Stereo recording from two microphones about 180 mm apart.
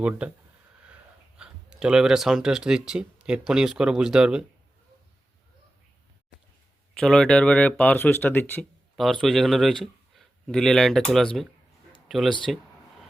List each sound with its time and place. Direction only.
0.2 s speech: 5° right (ahead or behind)
1.4 s speech: 5° right (ahead or behind)
7.0 s speech: 5° left (ahead or behind)
9.0 s speech: centre (ahead or behind)